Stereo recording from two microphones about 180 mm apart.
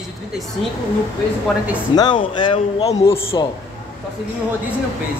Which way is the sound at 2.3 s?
25° left (ahead or behind).